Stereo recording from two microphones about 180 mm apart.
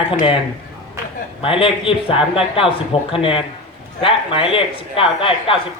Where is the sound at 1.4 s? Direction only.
30° left (ahead or behind).